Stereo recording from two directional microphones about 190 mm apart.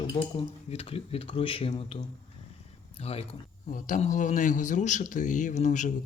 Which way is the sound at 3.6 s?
45° left (ahead or behind).